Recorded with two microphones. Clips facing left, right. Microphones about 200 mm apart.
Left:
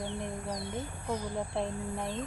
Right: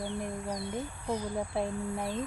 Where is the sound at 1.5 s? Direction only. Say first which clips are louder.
Right 2 dB; 5° right (ahead or behind).